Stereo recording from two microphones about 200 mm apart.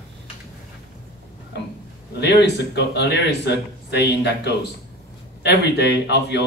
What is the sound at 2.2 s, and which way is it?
Speech, 55° left (ahead or behind).